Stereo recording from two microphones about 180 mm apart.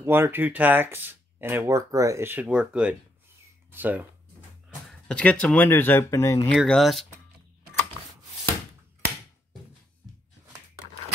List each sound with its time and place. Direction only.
0.0 s speech: 10° right (ahead or behind)
5.0 s speech: 5° left (ahead or behind)
6.5 s speech: centre (ahead or behind)